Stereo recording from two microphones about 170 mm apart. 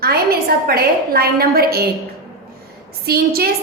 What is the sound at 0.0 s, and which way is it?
A woman's voice, 65° right (ahead or behind).